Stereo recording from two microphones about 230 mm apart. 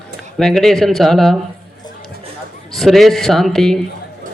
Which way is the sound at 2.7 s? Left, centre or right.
Centre.